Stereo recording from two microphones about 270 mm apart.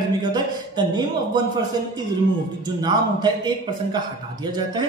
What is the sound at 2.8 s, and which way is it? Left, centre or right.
Speech, centre.